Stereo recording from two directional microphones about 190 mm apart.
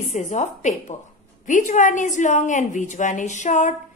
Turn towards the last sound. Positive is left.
turn(degrees=40)  # may be behind; listen again after turning